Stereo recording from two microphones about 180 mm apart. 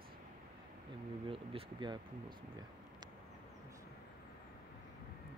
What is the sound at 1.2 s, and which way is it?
Speech, 30° right (ahead or behind).